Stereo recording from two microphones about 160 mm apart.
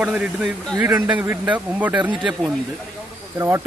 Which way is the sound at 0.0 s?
5° right (ahead or behind).